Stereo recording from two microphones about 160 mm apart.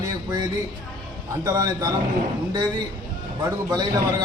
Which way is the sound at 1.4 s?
20° right (ahead or behind).